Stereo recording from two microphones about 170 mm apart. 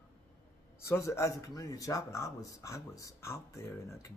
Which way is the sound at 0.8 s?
15° left (ahead or behind).